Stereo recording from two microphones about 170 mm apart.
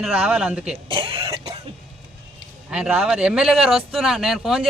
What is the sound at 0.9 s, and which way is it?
Cough, 30° right (ahead or behind).